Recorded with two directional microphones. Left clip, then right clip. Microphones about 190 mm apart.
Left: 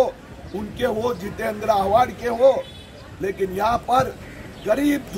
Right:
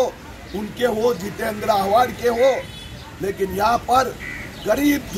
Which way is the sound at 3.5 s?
5° left (ahead or behind).